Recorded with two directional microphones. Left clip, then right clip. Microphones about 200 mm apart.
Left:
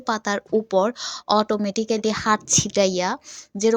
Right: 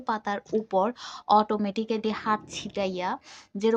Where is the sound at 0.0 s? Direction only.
25° left (ahead or behind).